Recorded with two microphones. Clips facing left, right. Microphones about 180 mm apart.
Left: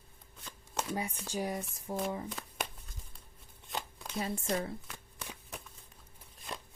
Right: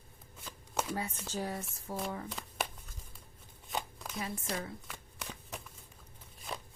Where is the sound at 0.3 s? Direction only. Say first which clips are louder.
Right 2 dB; centre (ahead or behind).